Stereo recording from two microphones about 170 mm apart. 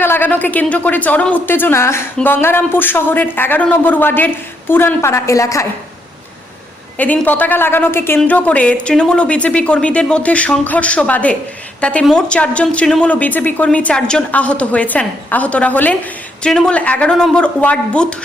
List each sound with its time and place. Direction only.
0.0 s a woman's voice: 10° left (ahead or behind)
7.0 s a woman's voice: 10° left (ahead or behind)